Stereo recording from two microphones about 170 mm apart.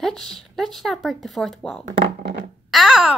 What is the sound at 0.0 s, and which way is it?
A woman's voice, 5° left (ahead or behind).